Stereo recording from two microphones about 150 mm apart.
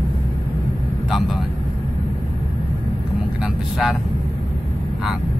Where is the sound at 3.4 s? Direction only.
5° right (ahead or behind).